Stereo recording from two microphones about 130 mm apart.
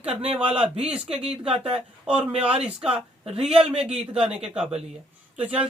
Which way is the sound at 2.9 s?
45° right (ahead or behind).